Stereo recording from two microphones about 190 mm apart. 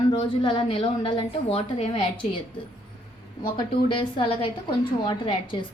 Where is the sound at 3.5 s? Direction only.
25° left (ahead or behind).